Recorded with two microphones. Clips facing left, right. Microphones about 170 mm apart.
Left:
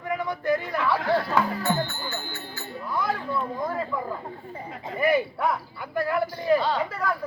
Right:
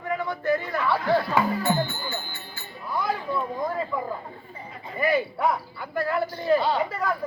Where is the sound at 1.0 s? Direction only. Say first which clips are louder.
Right 1 dB; 5° right (ahead or behind).